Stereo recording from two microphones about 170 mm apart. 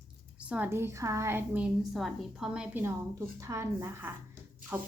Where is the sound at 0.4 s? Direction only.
10° right (ahead or behind).